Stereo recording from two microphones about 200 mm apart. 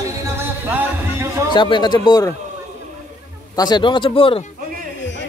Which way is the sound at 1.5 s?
25° left (ahead or behind).